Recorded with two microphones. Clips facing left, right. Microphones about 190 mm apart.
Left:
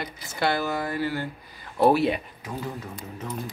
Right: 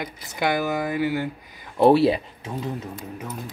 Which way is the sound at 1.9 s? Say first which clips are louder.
Right 5 dB; 30° right (ahead or behind).